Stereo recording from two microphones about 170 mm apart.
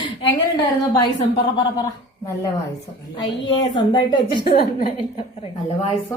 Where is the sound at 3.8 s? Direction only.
25° left (ahead or behind).